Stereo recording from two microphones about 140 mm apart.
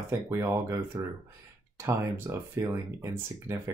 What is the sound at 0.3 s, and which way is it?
Speech, 20° right (ahead or behind).